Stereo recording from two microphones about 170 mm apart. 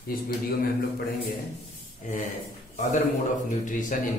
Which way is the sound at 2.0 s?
50° left (ahead or behind).